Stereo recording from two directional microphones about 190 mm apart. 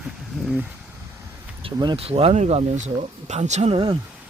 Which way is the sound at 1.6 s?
25° right (ahead or behind).